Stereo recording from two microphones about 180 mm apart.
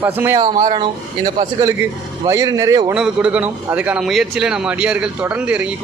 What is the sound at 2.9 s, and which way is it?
A man's voice, 5° right (ahead or behind).